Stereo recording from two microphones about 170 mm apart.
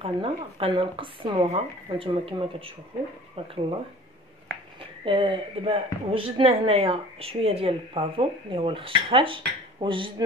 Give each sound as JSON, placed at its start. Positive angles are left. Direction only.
{"t": 0.0, "sound": "a woman's voice", "side_deg": -30}
{"t": 5.0, "sound": "a woman's voice", "side_deg": -30}